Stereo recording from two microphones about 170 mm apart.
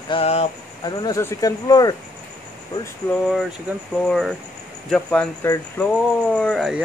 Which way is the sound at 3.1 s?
Centre (ahead or behind).